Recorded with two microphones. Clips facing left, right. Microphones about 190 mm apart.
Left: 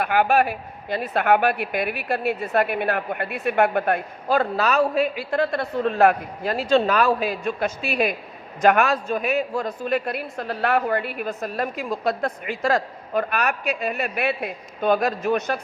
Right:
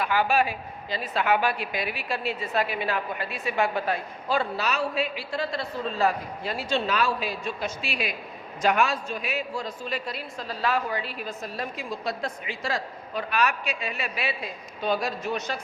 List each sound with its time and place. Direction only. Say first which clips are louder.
0.0 s speech: left 4 dB; 55° left (ahead or behind)